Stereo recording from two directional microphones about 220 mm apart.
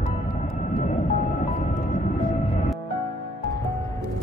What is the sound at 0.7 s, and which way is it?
Vehicle, 35° left (ahead or behind).